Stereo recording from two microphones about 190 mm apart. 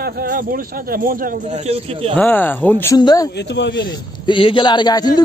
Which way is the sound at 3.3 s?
70° left (ahead or behind).